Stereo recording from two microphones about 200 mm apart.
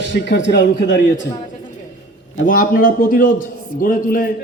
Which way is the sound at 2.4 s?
45° left (ahead or behind).